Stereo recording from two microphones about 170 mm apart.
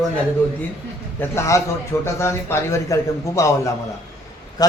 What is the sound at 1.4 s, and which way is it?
A man's voice, 15° left (ahead or behind).